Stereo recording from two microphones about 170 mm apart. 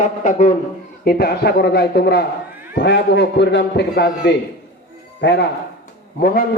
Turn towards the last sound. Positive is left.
turn(degrees=60)  # may be behind; listen again after turning